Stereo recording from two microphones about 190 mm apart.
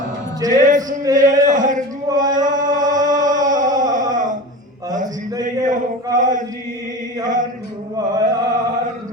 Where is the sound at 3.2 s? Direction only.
45° right (ahead or behind).